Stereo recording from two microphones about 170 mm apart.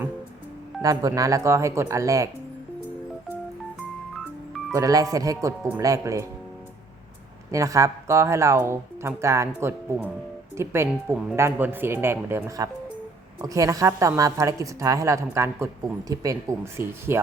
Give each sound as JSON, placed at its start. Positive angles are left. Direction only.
{"t": 0.8, "sound": "a woman's voice", "side_deg": -20}
{"t": 4.7, "sound": "a woman's voice", "side_deg": -20}
{"t": 7.5, "sound": "a woman's voice", "side_deg": -20}